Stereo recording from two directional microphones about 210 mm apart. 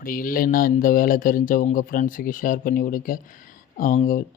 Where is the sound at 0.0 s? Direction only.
40° left (ahead or behind).